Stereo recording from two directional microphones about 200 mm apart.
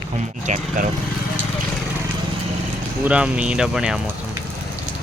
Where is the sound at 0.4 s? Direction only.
35° right (ahead or behind).